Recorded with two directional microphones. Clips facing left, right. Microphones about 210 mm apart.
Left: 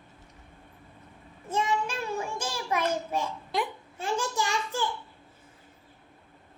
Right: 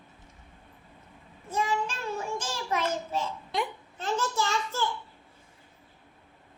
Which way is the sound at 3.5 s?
5° left (ahead or behind).